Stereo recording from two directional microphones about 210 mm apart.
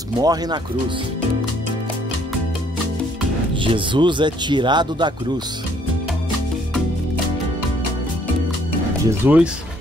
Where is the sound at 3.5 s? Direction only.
25° right (ahead or behind).